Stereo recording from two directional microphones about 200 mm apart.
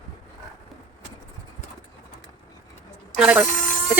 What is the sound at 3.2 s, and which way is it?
Speech, 5° right (ahead or behind).